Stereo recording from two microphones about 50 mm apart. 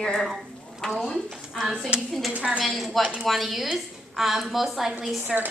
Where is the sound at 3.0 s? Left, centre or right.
Right.